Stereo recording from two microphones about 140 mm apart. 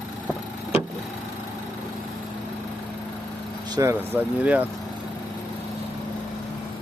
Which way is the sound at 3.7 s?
20° right (ahead or behind).